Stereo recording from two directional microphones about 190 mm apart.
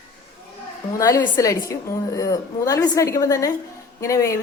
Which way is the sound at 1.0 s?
15° left (ahead or behind).